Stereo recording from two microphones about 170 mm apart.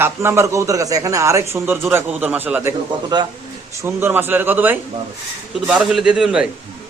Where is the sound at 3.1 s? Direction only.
25° right (ahead or behind).